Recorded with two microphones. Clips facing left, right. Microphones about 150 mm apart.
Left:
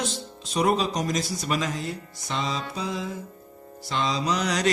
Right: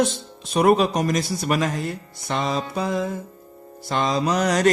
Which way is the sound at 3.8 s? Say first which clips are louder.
Right 4 dB; 50° right (ahead or behind).